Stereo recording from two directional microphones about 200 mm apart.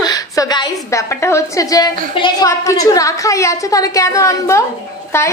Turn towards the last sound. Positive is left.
turn(degrees=10)  # may be behind; listen again after turning